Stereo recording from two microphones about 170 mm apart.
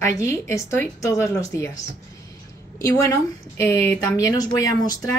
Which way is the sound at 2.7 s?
20° left (ahead or behind).